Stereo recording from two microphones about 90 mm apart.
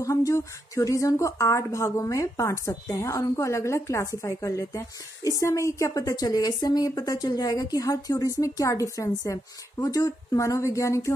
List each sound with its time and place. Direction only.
0.0 s a woman's voice: 35° left (ahead or behind)